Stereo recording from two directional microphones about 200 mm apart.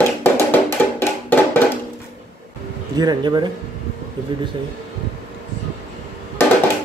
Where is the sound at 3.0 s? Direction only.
20° right (ahead or behind).